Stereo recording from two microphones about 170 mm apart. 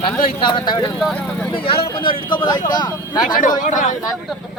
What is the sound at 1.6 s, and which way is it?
Speech, 30° left (ahead or behind).